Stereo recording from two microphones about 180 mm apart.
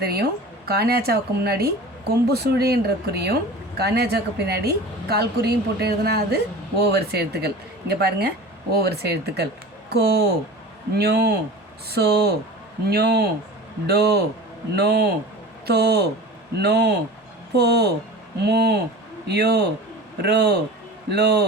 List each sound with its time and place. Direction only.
0.0 s speech: 60° right (ahead or behind)